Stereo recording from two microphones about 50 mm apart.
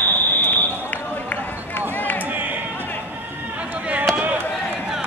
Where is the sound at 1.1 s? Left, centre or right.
Left.